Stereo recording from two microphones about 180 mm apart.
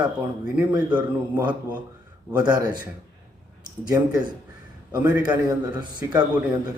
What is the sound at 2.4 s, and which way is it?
Speech, 25° right (ahead or behind).